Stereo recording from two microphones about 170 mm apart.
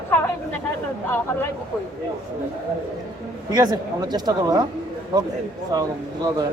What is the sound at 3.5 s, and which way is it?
Speech, 25° right (ahead or behind).